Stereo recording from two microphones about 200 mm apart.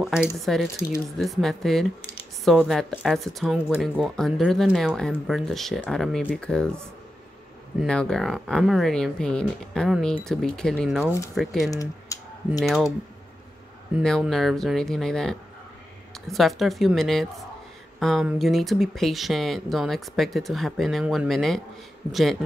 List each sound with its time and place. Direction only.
0.0 s speech: 5° right (ahead or behind)
7.8 s speech: 5° left (ahead or behind)
11.7 s speech: 15° left (ahead or behind)
12.5 s speech: centre (ahead or behind)
13.9 s speech: centre (ahead or behind)